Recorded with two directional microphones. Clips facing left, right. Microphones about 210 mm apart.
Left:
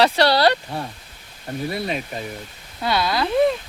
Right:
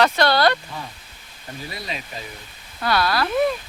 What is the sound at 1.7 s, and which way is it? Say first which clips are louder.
Speech: left 5 dB; 55° left (ahead or behind).